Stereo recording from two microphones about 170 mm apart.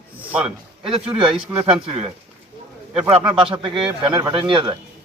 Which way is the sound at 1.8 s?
30° right (ahead or behind).